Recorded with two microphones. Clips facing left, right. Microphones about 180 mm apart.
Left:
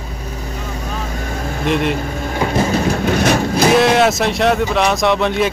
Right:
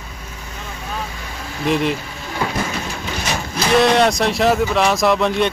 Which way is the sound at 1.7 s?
Centre (ahead or behind).